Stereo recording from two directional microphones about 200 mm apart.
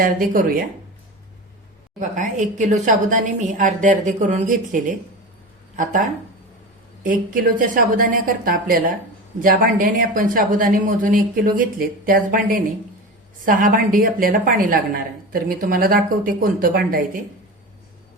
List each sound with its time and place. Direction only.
0.0 s a woman's voice: 45° right (ahead or behind)
2.0 s a woman's voice: 40° right (ahead or behind)